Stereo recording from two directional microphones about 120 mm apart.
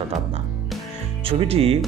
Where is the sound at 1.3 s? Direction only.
50° right (ahead or behind).